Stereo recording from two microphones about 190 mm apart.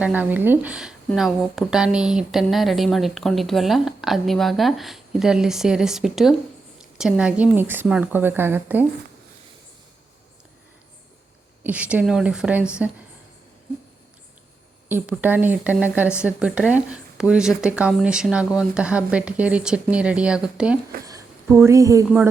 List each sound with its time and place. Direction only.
0.0 s a woman's voice: 10° right (ahead or behind)
11.6 s a woman's voice: 5° right (ahead or behind)
14.8 s a woman's voice: 10° right (ahead or behind)
21.0 s speech: 20° right (ahead or behind)